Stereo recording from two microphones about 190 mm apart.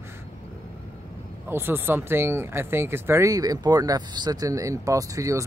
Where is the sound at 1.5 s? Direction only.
10° right (ahead or behind).